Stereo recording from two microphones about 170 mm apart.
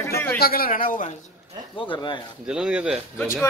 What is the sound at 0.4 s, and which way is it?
Speech, 60° left (ahead or behind).